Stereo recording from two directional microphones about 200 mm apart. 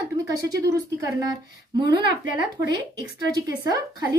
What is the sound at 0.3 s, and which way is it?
Speech, 15° right (ahead or behind).